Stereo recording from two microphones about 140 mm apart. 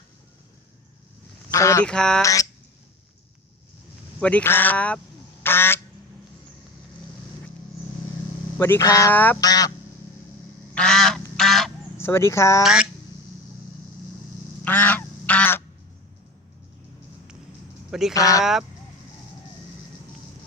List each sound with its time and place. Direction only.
1.5 s speech: 20° left (ahead or behind)
1.8 s a sound: 5° left (ahead or behind)
2.2 s a sound: 25° left (ahead or behind)
4.2 s speech: 10° left (ahead or behind)
5.4 s quack: 15° left (ahead or behind)
8.5 s speech: 15° left (ahead or behind)
9.1 s speech: 15° left (ahead or behind)
9.4 s speech: 25° left (ahead or behind)
10.8 s goose: 5° left (ahead or behind)
11.9 s speech: 20° left (ahead or behind)
12.6 s a sound: 5° right (ahead or behind)
14.6 s goose: 10° left (ahead or behind)
18.1 s speech: 25° left (ahead or behind)